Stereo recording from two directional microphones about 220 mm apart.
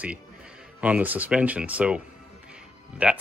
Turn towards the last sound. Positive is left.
turn(degrees=-5)  # may be behind; listen again after turning